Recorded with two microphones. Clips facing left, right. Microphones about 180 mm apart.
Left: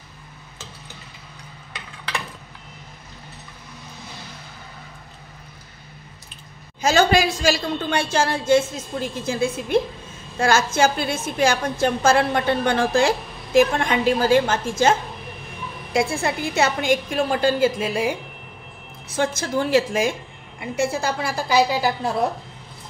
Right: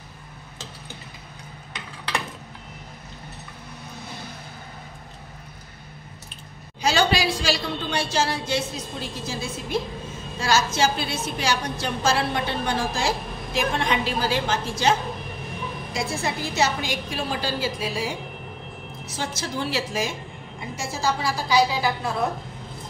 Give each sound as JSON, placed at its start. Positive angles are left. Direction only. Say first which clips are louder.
{"t": 6.8, "sound": "a woman's voice", "louder": "left 4 dB", "side_deg": 45}
{"t": 19.1, "sound": "a woman's voice", "louder": "left 7 dB", "side_deg": 50}